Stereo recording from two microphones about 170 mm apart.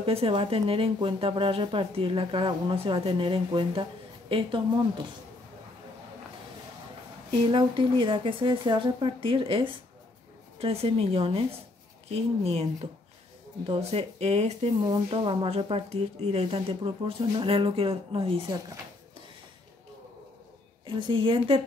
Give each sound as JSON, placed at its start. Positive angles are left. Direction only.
{"t": 0.0, "sound": "speech", "side_deg": -35}
{"t": 7.2, "sound": "speech", "side_deg": -30}
{"t": 13.7, "sound": "speech", "side_deg": -35}
{"t": 20.8, "sound": "speech", "side_deg": -30}